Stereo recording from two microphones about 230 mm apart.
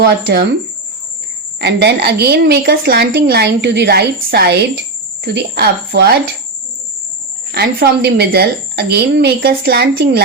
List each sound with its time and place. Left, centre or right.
1.6 s a woman's voice: right
7.5 s a woman's voice: right